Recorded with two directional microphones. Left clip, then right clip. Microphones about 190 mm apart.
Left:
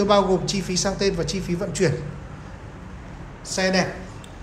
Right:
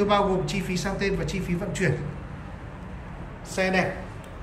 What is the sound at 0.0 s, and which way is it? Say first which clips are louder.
A woman's voice: left 4 dB; 10° left (ahead or behind).